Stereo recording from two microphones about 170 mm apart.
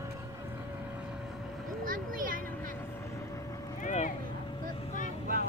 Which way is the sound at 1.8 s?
55° right (ahead or behind).